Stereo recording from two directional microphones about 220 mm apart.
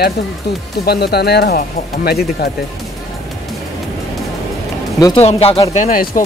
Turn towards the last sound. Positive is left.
turn(degrees=40)  # may be behind; listen again after turning